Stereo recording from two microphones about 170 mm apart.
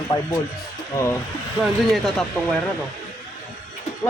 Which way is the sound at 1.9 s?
Centre (ahead or behind).